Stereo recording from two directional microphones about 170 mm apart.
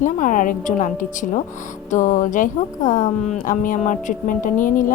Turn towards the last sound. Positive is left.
turn(degrees=50)  # may be behind; listen again after turning